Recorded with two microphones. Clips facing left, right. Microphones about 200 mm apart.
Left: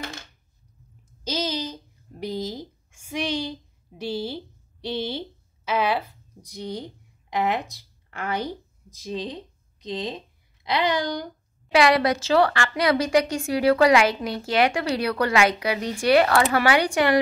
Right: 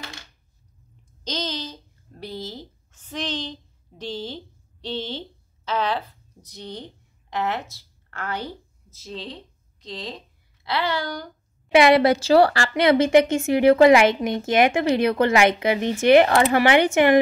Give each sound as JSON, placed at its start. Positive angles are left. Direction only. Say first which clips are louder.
{"t": 1.2, "sound": "a sound", "louder": "left 2 dB", "side_deg": 10}
{"t": 4.8, "sound": "speech", "louder": "left 2 dB", "side_deg": 10}
{"t": 11.7, "sound": "a woman's voice", "louder": "right 4 dB", "side_deg": -25}